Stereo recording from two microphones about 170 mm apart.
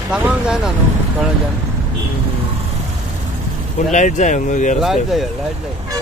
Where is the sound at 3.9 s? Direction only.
45° left (ahead or behind).